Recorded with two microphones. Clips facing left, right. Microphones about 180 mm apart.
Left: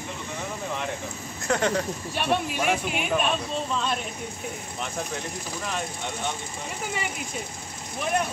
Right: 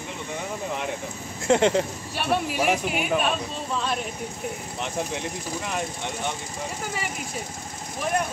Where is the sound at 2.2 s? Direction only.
5° right (ahead or behind).